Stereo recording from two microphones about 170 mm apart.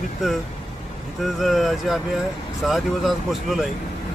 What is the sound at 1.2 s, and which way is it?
Speech, centre (ahead or behind).